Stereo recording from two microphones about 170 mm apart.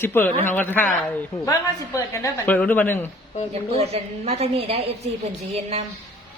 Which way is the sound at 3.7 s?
35° right (ahead or behind).